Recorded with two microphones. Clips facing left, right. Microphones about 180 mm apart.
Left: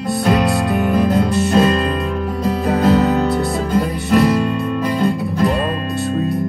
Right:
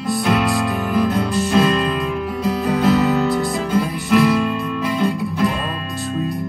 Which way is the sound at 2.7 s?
40° left (ahead or behind).